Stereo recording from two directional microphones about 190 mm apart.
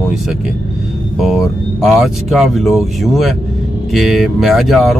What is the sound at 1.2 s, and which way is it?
Speech, centre (ahead or behind).